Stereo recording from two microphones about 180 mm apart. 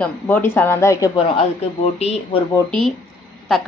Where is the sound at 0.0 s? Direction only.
10° left (ahead or behind).